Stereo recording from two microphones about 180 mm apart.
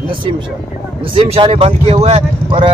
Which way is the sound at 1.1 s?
30° right (ahead or behind).